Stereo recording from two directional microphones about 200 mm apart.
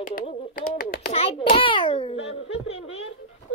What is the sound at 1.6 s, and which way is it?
Babbling, 25° left (ahead or behind).